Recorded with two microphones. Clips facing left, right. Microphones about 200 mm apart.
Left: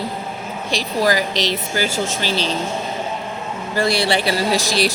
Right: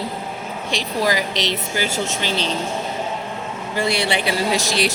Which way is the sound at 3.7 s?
40° left (ahead or behind).